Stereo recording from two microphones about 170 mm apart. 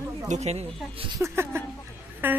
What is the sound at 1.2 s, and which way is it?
Speech, 15° right (ahead or behind).